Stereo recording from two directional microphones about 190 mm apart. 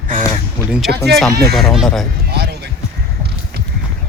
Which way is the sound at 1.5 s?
Centre (ahead or behind).